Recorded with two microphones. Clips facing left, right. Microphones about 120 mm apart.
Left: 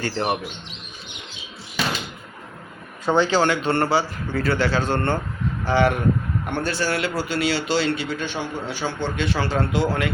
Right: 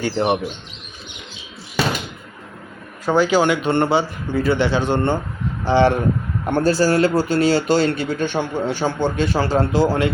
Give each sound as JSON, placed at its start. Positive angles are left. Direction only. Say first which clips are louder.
{"t": 0.0, "sound": "speech", "louder": "right 5 dB", "side_deg": -20}
{"t": 3.1, "sound": "speech", "louder": "right 3 dB", "side_deg": -10}
{"t": 5.6, "sound": "a man's voice", "louder": "right 4 dB", "side_deg": -30}